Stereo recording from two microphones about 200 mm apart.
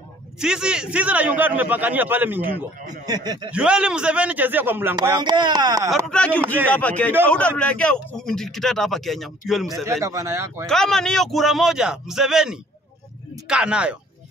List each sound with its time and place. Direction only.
0.4 s a man's voice: 5° right (ahead or behind)
3.3 s speech: 25° right (ahead or behind)
3.5 s a man's voice: 5° right (ahead or behind)
6.0 s speech: 5° left (ahead or behind)
9.8 s a man's voice: 15° right (ahead or behind)
10.7 s speech: centre (ahead or behind)